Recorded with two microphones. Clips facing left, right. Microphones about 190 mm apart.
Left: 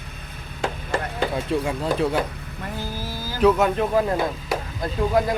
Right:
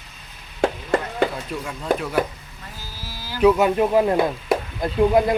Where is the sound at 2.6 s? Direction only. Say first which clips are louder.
Left 9 dB; 55° left (ahead or behind).